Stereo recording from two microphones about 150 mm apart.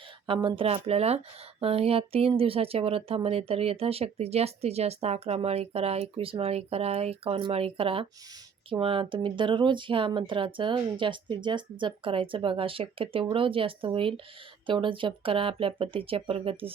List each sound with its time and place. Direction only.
0.3 s speech: 35° right (ahead or behind)